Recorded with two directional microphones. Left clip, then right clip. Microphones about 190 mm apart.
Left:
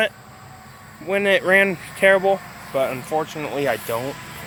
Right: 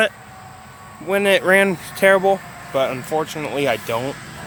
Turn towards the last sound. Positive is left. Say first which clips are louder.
# right 2 dB
turn(degrees=-15)  # may be behind; listen again after turning